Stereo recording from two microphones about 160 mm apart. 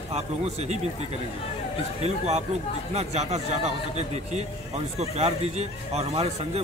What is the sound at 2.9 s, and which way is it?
A man's voice, 45° right (ahead or behind).